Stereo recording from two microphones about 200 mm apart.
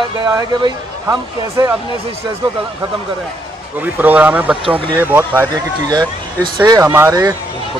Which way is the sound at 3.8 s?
10° right (ahead or behind).